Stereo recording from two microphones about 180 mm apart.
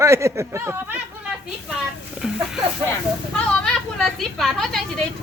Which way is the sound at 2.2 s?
5° right (ahead or behind).